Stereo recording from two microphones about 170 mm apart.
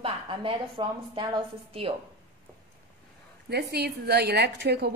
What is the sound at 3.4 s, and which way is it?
A woman's voice, 70° right (ahead or behind).